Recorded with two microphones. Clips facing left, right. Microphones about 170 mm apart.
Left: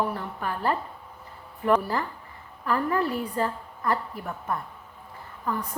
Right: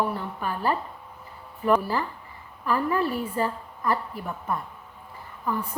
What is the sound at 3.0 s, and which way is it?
Speech, 15° left (ahead or behind).